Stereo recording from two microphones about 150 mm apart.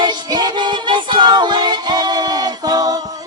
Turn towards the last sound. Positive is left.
turn(degrees=-25)  # may be behind; listen again after turning